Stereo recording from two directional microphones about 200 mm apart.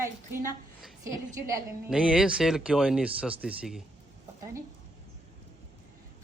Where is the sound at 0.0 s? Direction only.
15° right (ahead or behind).